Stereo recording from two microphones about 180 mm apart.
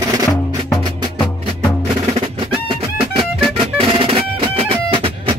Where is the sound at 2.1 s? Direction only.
30° right (ahead or behind).